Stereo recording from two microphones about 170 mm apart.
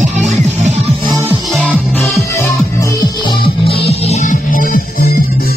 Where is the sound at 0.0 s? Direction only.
45° right (ahead or behind).